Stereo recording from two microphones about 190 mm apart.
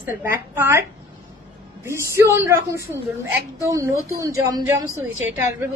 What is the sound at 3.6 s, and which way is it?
A woman's voice, 15° right (ahead or behind).